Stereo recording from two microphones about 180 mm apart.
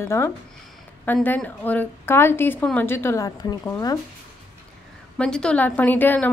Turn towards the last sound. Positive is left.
turn(degrees=10)  # may be behind; listen again after turning